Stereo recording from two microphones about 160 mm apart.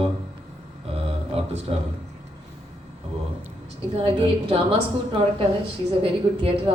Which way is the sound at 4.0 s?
30° right (ahead or behind).